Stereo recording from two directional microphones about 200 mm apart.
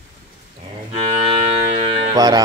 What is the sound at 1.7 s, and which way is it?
Music, 35° right (ahead or behind).